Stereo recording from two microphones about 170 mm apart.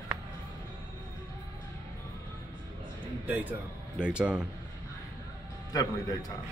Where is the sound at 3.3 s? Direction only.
10° right (ahead or behind).